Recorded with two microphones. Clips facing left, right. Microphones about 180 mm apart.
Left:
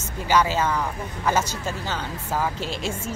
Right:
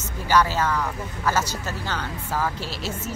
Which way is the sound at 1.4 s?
10° right (ahead or behind).